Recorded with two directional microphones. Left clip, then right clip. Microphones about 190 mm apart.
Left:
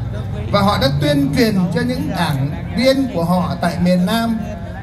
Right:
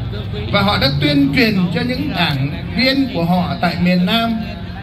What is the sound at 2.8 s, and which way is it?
Speech, 35° left (ahead or behind).